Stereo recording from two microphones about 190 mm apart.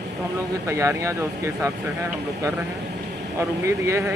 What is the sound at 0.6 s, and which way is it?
Speech, 15° right (ahead or behind).